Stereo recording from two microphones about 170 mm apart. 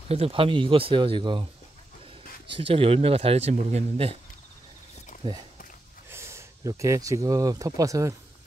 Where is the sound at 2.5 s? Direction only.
30° right (ahead or behind).